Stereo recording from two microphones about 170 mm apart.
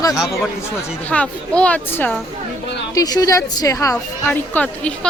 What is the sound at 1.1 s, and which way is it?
A woman's voice, 5° left (ahead or behind).